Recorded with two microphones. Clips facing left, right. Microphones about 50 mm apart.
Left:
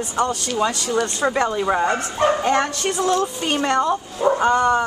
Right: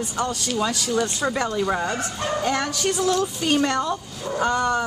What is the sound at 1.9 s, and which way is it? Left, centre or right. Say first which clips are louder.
Speech: left 7 dB; left.